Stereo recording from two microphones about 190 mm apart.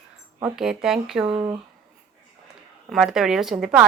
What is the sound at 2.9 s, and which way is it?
Speech, centre (ahead or behind).